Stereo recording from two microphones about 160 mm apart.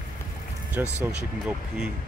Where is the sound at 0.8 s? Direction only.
20° left (ahead or behind).